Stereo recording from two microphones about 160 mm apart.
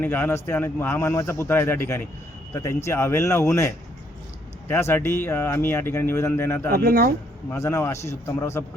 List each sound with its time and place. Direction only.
0.0 s speech: 10° left (ahead or behind)
6.7 s speech: 65° right (ahead or behind)
7.5 s speech: 15° left (ahead or behind)